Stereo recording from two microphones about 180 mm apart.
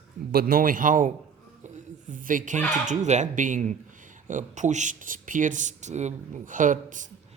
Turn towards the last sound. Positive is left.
turn(degrees=-45)  # may be behind; listen again after turning